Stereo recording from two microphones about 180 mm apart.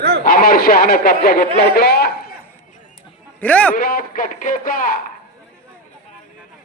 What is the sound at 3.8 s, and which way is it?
A man's voice, 55° left (ahead or behind).